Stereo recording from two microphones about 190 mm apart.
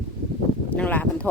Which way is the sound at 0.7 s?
10° left (ahead or behind).